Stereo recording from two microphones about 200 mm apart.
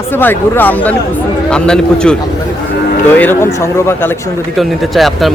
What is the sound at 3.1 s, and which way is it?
Speech, 10° left (ahead or behind).